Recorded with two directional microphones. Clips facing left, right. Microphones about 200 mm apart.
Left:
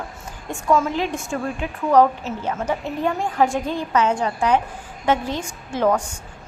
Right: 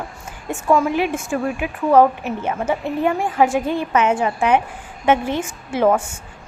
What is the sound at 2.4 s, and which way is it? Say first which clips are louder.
A woman's voice: right 2 dB; 10° right (ahead or behind).